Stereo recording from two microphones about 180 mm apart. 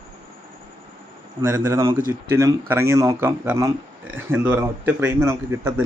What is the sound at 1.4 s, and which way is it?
Speech, 20° right (ahead or behind).